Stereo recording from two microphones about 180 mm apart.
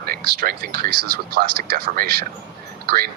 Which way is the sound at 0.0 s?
55° right (ahead or behind).